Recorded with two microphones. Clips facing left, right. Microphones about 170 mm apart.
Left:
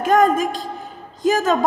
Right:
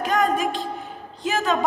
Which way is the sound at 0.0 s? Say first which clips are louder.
Left 6 dB; 40° left (ahead or behind).